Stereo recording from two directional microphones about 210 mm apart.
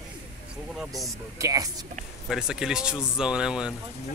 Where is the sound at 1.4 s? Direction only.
15° right (ahead or behind).